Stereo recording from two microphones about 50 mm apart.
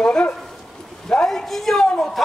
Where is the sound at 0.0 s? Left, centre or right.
Centre.